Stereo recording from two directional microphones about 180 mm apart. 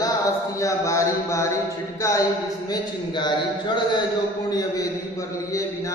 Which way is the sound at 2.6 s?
25° left (ahead or behind).